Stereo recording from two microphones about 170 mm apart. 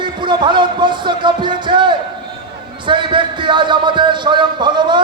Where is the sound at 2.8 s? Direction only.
30° right (ahead or behind).